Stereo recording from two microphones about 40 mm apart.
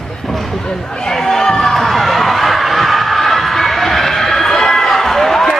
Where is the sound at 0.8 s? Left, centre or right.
Centre.